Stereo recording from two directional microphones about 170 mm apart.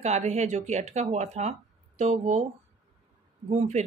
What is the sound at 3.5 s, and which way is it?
Speech, 40° right (ahead or behind).